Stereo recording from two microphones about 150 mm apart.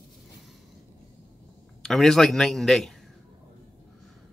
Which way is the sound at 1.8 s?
5° left (ahead or behind).